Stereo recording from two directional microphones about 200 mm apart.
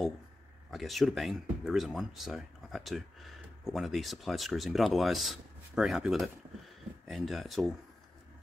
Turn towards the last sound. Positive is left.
turn(degrees=0)  # may be behind; listen again after turning